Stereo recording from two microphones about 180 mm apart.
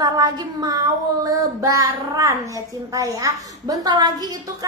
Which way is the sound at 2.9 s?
20° right (ahead or behind).